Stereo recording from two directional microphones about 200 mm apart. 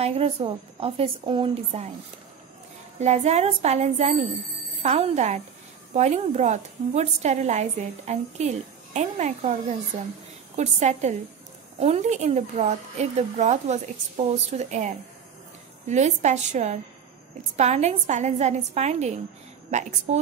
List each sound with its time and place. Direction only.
0.0 s a woman's voice: 30° right (ahead or behind)
3.0 s a woman's voice: 35° right (ahead or behind)